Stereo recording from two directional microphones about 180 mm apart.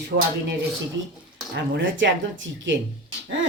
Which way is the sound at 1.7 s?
90° right.